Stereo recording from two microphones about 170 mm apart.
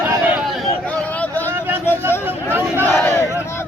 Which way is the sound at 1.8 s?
15° left (ahead or behind).